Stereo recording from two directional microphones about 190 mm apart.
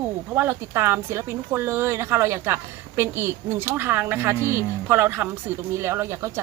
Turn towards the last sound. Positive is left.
turn(degrees=-10)  # may be behind; listen again after turning